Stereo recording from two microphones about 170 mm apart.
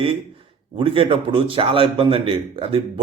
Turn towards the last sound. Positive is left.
turn(degrees=-30)  # may be behind; listen again after turning